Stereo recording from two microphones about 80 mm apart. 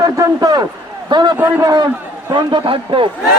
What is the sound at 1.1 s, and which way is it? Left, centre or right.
Speech, right.